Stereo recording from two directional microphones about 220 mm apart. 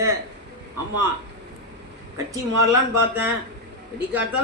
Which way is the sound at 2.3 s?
10° right (ahead or behind).